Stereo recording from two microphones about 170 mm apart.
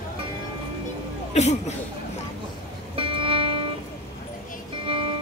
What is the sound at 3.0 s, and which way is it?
Music, 30° right (ahead or behind).